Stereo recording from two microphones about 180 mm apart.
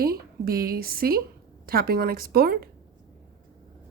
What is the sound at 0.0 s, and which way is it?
A woman's voice, 60° right (ahead or behind).